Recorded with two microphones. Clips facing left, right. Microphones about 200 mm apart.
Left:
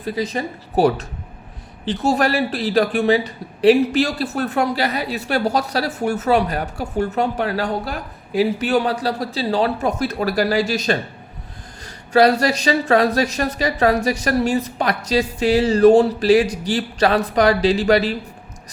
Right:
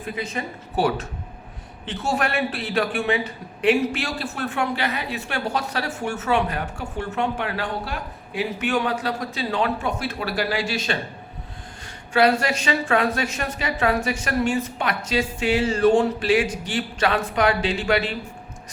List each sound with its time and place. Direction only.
0.0 s speech: 35° left (ahead or behind)
12.1 s speech: 40° left (ahead or behind)